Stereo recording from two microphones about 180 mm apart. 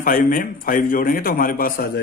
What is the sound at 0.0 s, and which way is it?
Speech, 50° left (ahead or behind).